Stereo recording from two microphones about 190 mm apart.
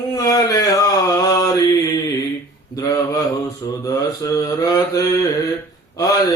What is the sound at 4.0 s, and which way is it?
Mantra, 20° left (ahead or behind).